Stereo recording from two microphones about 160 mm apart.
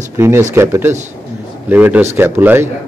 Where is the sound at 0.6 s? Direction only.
15° right (ahead or behind).